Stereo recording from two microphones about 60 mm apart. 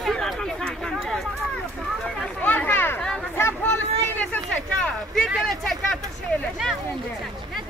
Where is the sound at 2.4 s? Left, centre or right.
Left.